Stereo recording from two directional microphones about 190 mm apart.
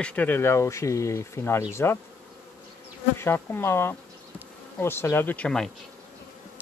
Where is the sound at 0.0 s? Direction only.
10° left (ahead or behind).